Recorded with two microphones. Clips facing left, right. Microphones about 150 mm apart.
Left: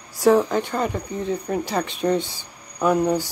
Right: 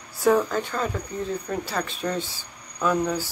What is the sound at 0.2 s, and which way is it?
Speech, 10° left (ahead or behind).